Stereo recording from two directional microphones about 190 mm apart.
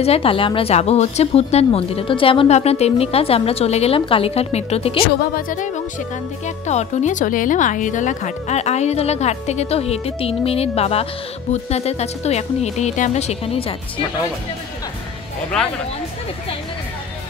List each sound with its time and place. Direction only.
0.0 s a woman's voice: 30° left (ahead or behind)
5.0 s speech: 45° left (ahead or behind)
6.4 s a woman's voice: 35° left (ahead or behind)